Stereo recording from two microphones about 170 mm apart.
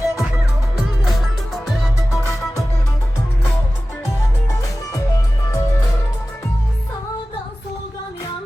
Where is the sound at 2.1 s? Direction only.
15° left (ahead or behind).